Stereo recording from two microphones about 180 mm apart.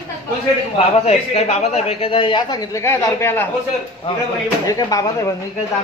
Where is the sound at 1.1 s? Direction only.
35° left (ahead or behind); by 3.5 s 15° left (ahead or behind).